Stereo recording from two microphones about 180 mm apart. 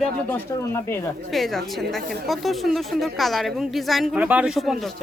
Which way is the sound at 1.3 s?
Centre (ahead or behind).